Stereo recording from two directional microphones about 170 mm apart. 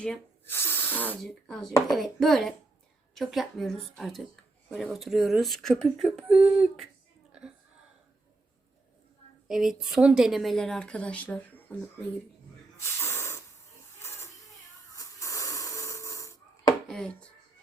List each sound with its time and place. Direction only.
0.0 s a woman's voice: 10° left (ahead or behind)
9.5 s a woman's voice: centre (ahead or behind)
12.7 s snake: 15° left (ahead or behind)
14.0 s a sound: 15° left (ahead or behind)
16.9 s speech: 5° left (ahead or behind)